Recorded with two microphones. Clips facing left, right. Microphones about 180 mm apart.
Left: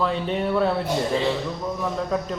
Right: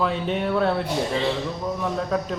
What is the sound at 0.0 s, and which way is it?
A man's voice, centre (ahead or behind).